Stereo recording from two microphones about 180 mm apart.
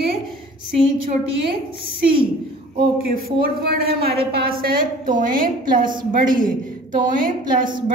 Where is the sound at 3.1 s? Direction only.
55° right (ahead or behind).